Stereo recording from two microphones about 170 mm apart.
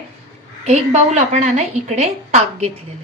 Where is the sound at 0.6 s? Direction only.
40° right (ahead or behind).